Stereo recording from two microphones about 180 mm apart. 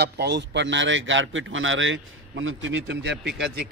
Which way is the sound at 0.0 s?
70° right (ahead or behind).